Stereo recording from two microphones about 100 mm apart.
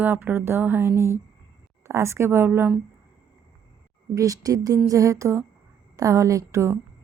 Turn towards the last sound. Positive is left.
turn(degrees=-30)  # may be behind; listen again after turning